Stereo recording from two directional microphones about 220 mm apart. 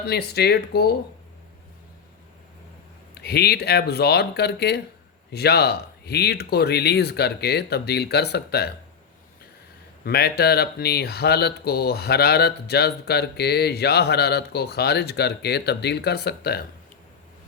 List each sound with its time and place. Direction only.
0.1 s speech: 45° left (ahead or behind)
3.2 s speech: 45° left (ahead or behind)
10.0 s speech: 45° left (ahead or behind)